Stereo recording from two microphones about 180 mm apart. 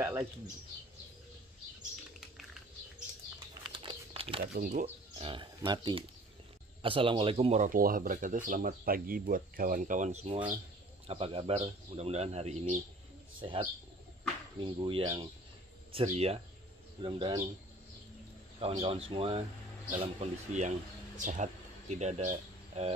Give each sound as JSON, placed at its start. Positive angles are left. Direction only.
{"t": 0.0, "sound": "speech", "side_deg": -15}
{"t": 3.3, "sound": "crumpling", "side_deg": -25}
{"t": 4.4, "sound": "speech", "side_deg": -50}
{"t": 4.8, "sound": "speech", "side_deg": -30}
{"t": 13.4, "sound": "speech", "side_deg": -30}
{"t": 18.6, "sound": "speech", "side_deg": -30}